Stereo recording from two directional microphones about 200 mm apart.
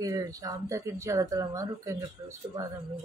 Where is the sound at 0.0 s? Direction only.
15° right (ahead or behind).